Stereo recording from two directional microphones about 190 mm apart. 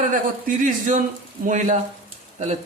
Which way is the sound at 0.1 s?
45° right (ahead or behind).